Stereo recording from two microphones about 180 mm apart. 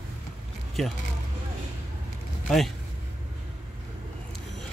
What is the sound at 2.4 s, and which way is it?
Speech, centre (ahead or behind).